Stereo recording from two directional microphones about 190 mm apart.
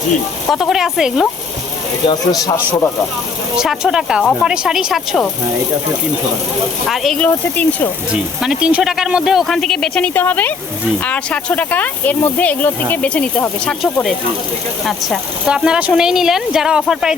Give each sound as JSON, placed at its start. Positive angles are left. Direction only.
{"t": 0.5, "sound": "speech", "side_deg": 0}
{"t": 2.0, "sound": "speech", "side_deg": 20}
{"t": 3.6, "sound": "speech", "side_deg": -5}
{"t": 6.8, "sound": "speech", "side_deg": 0}
{"t": 8.1, "sound": "speech", "side_deg": -5}